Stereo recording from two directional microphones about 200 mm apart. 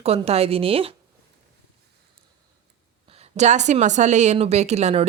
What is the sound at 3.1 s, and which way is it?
Speech, 30° right (ahead or behind).